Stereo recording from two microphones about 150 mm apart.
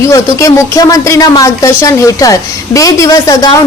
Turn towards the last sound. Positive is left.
turn(degrees=25)  # may be behind; listen again after turning